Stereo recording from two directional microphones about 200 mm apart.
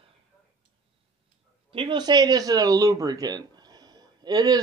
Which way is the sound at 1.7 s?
25° right (ahead or behind).